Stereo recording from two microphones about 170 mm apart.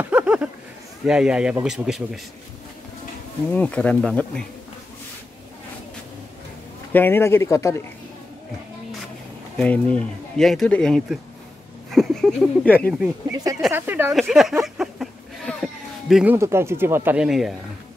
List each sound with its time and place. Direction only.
0.0 s a sound: 5° right (ahead or behind)
1.0 s speech: 5° right (ahead or behind)
3.5 s speech: 5° left (ahead or behind)
6.9 s speech: 10° left (ahead or behind)
9.6 s speech: 5° left (ahead or behind)
13.3 s speech: 20° right (ahead or behind)
14.1 s speech: centre (ahead or behind)
14.6 s a sound: centre (ahead or behind)
16.3 s speech: 15° right (ahead or behind)